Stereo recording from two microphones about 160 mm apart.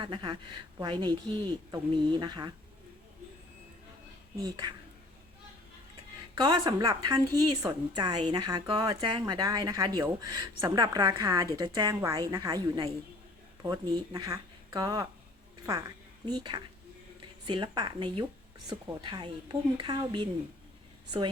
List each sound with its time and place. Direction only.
0.0 s a woman's voice: 30° right (ahead or behind)
4.4 s a woman's voice: 25° right (ahead or behind)
6.3 s a woman's voice: 25° right (ahead or behind)
16.2 s a woman's voice: 25° right (ahead or behind)